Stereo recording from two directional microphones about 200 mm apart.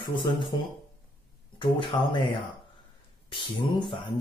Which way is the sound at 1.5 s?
25° left (ahead or behind).